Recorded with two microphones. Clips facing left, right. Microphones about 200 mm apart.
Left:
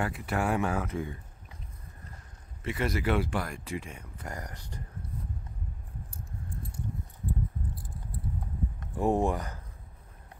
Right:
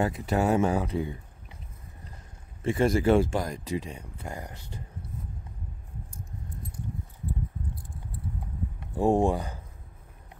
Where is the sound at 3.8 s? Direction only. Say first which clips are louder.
Right 5 dB; 30° right (ahead or behind).